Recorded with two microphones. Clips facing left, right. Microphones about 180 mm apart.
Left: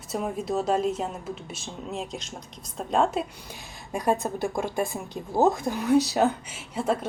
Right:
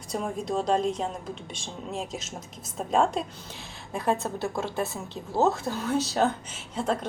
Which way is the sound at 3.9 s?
15° left (ahead or behind).